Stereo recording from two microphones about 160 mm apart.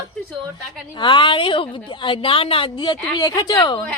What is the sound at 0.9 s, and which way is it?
A woman's voice, 30° left (ahead or behind).